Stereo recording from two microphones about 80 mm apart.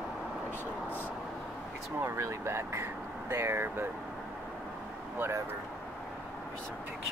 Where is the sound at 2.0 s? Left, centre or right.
Right.